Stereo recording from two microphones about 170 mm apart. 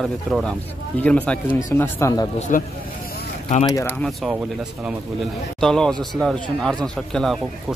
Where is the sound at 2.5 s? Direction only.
50° left (ahead or behind).